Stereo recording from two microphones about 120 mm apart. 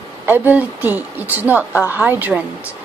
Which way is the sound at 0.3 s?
15° right (ahead or behind).